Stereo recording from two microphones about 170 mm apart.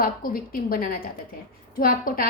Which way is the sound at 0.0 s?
60° left (ahead or behind).